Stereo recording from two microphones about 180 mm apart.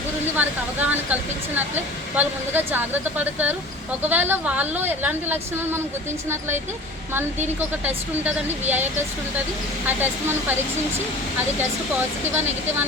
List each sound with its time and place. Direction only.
0.3 s a woman's voice: 10° right (ahead or behind)
9.8 s a woman's voice: 10° right (ahead or behind)